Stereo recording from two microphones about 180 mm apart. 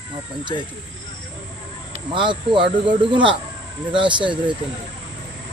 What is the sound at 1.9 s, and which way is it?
Speech, 25° right (ahead or behind).